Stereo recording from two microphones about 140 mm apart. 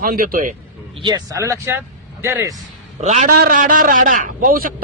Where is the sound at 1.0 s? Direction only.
25° right (ahead or behind).